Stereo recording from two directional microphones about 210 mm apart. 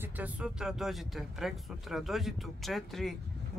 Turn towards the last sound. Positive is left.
turn(degrees=0)  # may be behind; listen again after turning